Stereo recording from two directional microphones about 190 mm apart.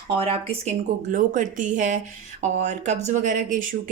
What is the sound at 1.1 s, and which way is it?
Speech, 45° right (ahead or behind).